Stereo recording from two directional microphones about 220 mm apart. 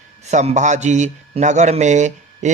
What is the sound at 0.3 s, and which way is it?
A man's voice, 30° right (ahead or behind).